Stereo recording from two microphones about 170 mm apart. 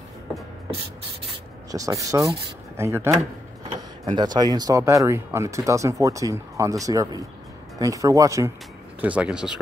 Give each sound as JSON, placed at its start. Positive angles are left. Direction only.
{"t": 1.7, "sound": "speech", "side_deg": -20}
{"t": 9.0, "sound": "speech", "side_deg": -10}